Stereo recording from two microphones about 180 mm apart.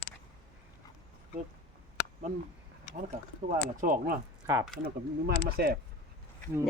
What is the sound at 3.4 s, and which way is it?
Speech, 50° right (ahead or behind).